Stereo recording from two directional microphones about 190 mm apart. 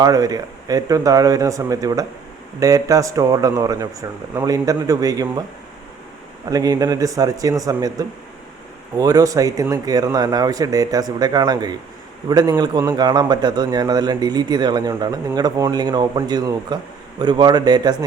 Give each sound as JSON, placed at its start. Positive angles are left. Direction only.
{"t": 0.0, "sound": "a man's voice", "side_deg": -20}
{"t": 6.5, "sound": "a man's voice", "side_deg": -20}